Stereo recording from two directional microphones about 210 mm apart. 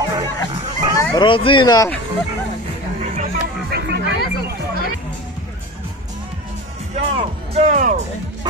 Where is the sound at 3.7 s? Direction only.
55° right (ahead or behind).